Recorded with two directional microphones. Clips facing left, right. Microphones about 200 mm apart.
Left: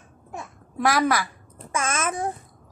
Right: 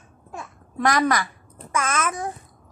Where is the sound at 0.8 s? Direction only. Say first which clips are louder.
Right 1 dB; 5° left (ahead or behind).